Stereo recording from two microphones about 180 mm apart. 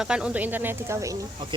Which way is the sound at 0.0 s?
5° right (ahead or behind).